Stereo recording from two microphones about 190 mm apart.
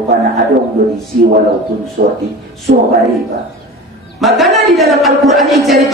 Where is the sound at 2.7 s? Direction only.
45° right (ahead or behind).